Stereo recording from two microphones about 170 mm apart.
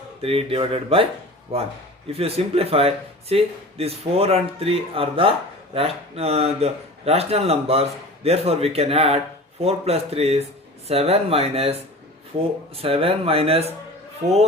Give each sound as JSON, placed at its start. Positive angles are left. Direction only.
{"t": 0.2, "sound": "speech", "side_deg": -35}